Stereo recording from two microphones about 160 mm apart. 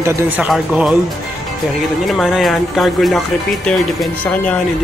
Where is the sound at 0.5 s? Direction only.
Centre (ahead or behind).